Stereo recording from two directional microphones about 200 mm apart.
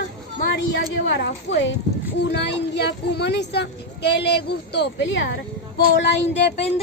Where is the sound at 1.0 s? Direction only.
60° left (ahead or behind).